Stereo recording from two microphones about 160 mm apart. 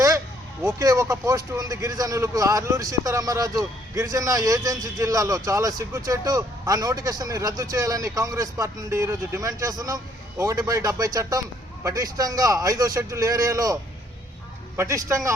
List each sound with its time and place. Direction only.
0.8 s a man's voice: 20° right (ahead or behind)
14.8 s a man's voice: 20° right (ahead or behind)